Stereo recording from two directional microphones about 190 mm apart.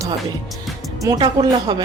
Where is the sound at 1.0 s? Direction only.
20° right (ahead or behind).